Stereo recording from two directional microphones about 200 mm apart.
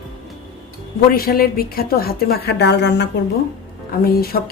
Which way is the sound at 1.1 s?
50° left (ahead or behind).